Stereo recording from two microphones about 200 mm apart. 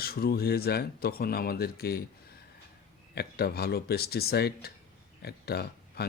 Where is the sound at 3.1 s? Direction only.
55° left (ahead or behind).